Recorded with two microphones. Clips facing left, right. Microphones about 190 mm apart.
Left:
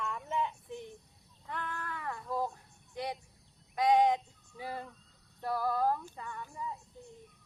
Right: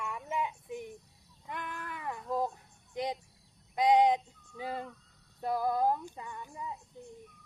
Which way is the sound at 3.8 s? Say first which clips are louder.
Right 2 dB; 15° right (ahead or behind).